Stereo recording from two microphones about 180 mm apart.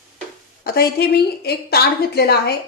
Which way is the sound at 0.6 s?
60° left (ahead or behind).